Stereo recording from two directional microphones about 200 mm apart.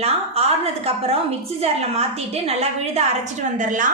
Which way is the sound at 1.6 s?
30° right (ahead or behind).